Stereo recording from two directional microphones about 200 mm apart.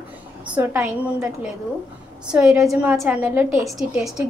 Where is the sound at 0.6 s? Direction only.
10° right (ahead or behind).